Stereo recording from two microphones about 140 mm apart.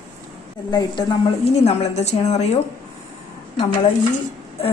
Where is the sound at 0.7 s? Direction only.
30° left (ahead or behind).